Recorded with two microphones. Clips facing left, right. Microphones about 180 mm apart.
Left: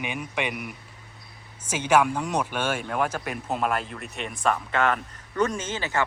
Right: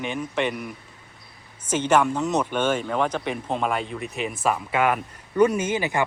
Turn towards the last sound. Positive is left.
turn(degrees=-15)  # may be behind; listen again after turning